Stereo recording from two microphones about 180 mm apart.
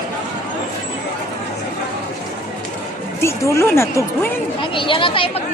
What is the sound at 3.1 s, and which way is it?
A woman's voice, 15° left (ahead or behind).